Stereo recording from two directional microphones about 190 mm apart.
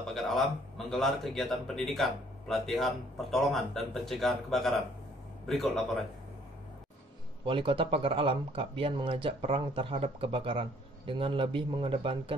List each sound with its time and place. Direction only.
0.1 s speech: centre (ahead or behind)
7.4 s speech: 25° right (ahead or behind)